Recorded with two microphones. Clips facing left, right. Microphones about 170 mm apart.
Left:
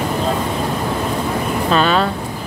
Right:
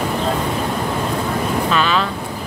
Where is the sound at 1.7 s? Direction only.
35° left (ahead or behind).